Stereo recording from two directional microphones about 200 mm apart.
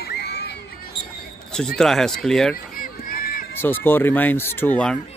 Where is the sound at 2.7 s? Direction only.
45° left (ahead or behind).